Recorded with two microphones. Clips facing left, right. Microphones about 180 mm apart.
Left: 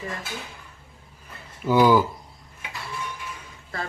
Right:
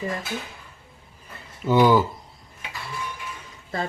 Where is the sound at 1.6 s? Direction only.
5° left (ahead or behind).